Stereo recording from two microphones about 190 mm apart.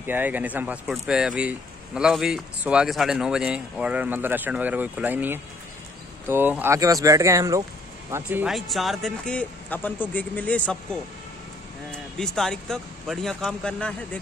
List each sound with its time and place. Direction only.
0.0 s speech: 10° right (ahead or behind)